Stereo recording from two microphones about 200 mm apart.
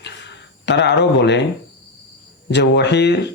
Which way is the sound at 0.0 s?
60° left (ahead or behind).